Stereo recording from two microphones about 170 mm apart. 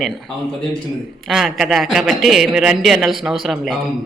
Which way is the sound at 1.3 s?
Centre (ahead or behind).